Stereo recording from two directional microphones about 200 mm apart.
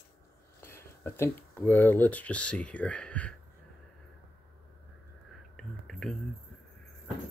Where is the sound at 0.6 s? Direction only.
10° left (ahead or behind).